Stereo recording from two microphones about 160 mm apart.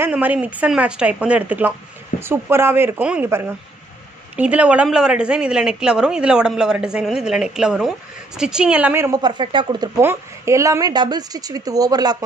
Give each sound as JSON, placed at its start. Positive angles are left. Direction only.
{"t": 0.0, "sound": "a woman's voice", "side_deg": -10}
{"t": 9.2, "sound": "a woman's voice", "side_deg": -30}